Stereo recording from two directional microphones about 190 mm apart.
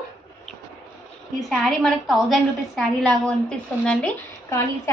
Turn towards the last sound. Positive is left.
turn(degrees=15)  # may be behind; listen again after turning